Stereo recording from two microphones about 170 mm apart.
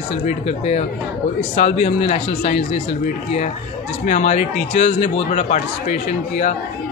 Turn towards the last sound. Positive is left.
turn(degrees=45)  # may be behind; listen again after turning